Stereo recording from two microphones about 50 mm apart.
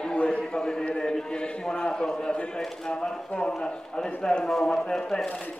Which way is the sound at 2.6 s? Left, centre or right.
Centre.